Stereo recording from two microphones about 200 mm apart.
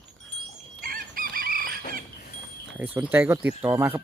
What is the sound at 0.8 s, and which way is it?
Chicken, 45° right (ahead or behind).